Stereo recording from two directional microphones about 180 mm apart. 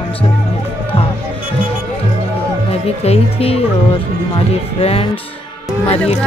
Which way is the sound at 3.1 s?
35° left (ahead or behind).